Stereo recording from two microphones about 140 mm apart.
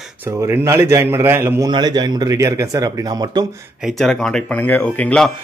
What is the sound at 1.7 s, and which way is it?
Speech, 30° right (ahead or behind).